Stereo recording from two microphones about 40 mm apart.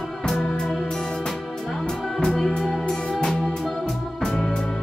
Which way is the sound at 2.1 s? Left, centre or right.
Centre.